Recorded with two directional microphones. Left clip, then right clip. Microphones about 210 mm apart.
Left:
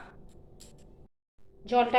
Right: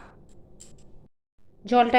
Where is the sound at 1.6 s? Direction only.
40° right (ahead or behind).